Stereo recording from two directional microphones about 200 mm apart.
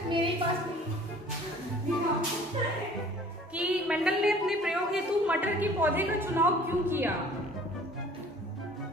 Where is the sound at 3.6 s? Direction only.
5° right (ahead or behind).